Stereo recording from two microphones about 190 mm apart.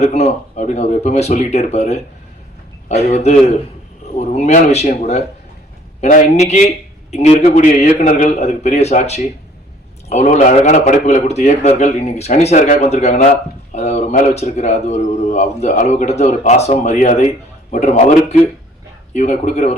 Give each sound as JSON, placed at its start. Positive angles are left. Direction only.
{"t": 0.0, "sound": "a man's voice", "side_deg": 35}